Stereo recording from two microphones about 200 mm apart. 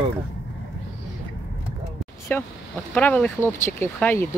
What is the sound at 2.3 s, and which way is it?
Speech, 10° left (ahead or behind).